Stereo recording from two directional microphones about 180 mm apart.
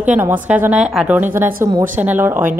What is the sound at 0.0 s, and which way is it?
A woman's voice, 10° right (ahead or behind).